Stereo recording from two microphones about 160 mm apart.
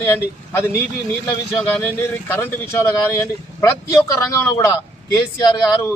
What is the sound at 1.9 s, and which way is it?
Speech, 15° left (ahead or behind).